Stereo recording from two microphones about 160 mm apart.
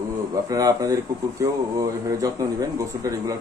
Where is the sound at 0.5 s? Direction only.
20° right (ahead or behind).